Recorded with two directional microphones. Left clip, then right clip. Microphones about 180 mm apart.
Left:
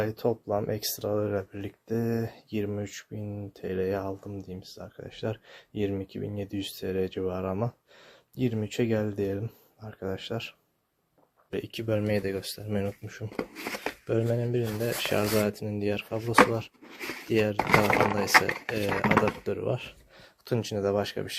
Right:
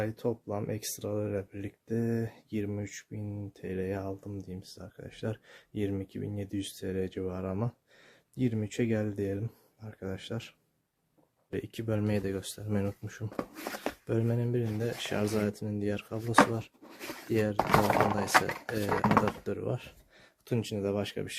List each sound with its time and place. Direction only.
0.0 s speech: centre (ahead or behind)
11.5 s speech: 10° right (ahead or behind)
17.7 s speech: 5° left (ahead or behind)
18.6 s speech: 10° right (ahead or behind)